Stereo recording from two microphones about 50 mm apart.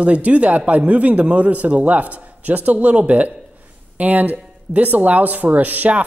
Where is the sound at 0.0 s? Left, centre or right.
Right.